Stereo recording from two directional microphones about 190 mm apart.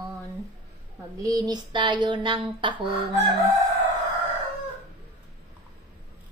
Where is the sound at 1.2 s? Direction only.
20° right (ahead or behind).